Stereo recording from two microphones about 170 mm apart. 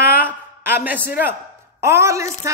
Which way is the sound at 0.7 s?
10° right (ahead or behind).